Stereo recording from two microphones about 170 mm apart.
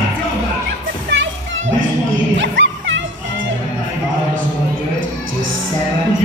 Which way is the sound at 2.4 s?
90° right.